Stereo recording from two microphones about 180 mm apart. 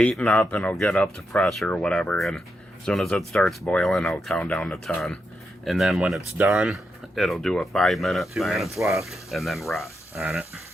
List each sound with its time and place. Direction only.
0.0 s speech: 5° left (ahead or behind)